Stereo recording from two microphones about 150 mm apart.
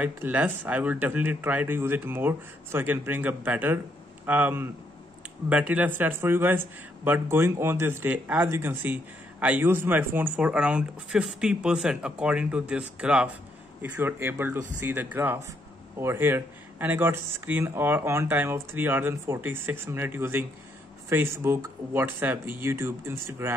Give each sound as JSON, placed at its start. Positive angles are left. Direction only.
{"t": 0.0, "sound": "speech", "side_deg": -10}